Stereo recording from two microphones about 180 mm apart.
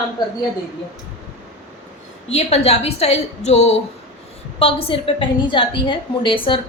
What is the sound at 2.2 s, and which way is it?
A woman's voice, 35° left (ahead or behind).